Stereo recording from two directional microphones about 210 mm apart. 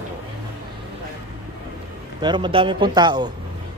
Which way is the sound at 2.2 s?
20° right (ahead or behind).